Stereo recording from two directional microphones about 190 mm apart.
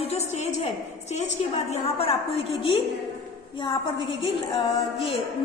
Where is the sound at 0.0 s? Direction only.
35° left (ahead or behind).